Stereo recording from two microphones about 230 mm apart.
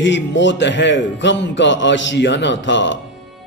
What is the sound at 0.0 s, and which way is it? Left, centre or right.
A man's voice, left.